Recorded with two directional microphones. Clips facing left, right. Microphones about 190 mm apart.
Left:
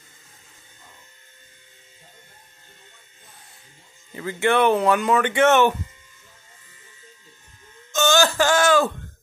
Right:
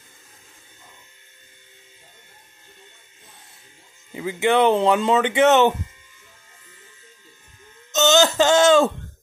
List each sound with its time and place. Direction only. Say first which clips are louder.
4.1 s speech: right 1 dB; 15° right (ahead or behind)
7.9 s wail: right 2 dB; 20° right (ahead or behind)